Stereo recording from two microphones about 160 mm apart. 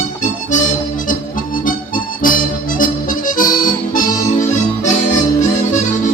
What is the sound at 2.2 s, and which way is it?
Music, 60° left (ahead or behind).